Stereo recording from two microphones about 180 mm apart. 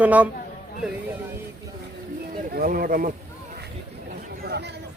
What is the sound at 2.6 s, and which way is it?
Speech, 55° right (ahead or behind).